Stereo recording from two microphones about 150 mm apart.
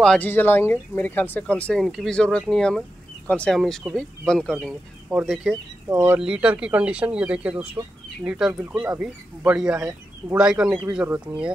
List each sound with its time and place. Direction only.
0.0 s speech: 5° left (ahead or behind)
5.9 s speech: 15° right (ahead or behind)
6.1 s speech: 5° right (ahead or behind)